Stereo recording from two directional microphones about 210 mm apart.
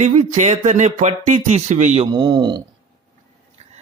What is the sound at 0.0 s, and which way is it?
Speech, 35° right (ahead or behind).